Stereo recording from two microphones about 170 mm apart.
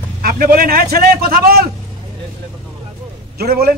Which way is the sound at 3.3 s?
65° right (ahead or behind).